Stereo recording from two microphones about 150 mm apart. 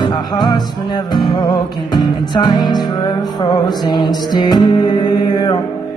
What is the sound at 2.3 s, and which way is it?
Music, 25° left (ahead or behind).